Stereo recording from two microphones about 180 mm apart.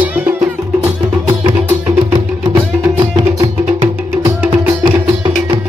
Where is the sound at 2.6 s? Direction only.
25° right (ahead or behind).